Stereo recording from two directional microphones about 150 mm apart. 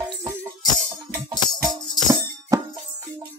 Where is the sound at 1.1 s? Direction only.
25° right (ahead or behind).